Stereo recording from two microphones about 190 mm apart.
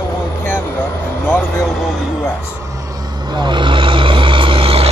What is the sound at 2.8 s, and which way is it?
Vehicle, 20° right (ahead or behind).